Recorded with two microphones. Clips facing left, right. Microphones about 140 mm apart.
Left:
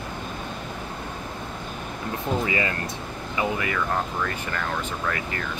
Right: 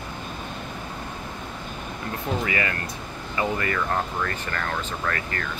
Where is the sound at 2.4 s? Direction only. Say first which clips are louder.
Left 1 dB; 20° left (ahead or behind).